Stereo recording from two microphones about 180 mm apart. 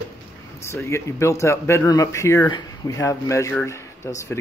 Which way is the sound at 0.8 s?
15° left (ahead or behind).